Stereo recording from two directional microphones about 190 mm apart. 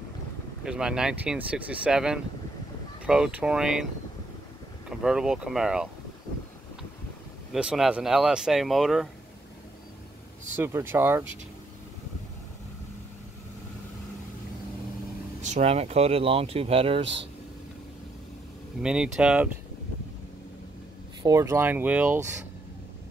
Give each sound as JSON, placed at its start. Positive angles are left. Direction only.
{"t": 0.7, "sound": "speech", "side_deg": -5}
{"t": 4.8, "sound": "speech", "side_deg": -5}
{"t": 7.5, "sound": "speech", "side_deg": 0}
{"t": 10.5, "sound": "speech", "side_deg": -10}
{"t": 15.4, "sound": "speech", "side_deg": -35}
{"t": 18.8, "sound": "speech", "side_deg": -5}
{"t": 21.2, "sound": "speech", "side_deg": -15}